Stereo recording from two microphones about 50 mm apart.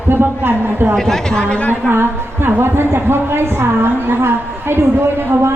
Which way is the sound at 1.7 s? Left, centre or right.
Right.